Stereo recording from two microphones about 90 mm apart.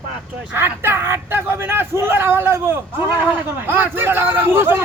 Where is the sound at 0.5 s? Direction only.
25° right (ahead or behind).